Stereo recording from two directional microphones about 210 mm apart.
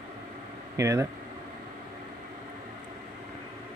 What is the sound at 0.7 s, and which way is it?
Speech, 15° right (ahead or behind).